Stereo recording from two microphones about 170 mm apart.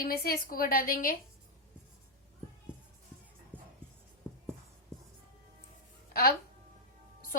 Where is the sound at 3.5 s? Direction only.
10° right (ahead or behind).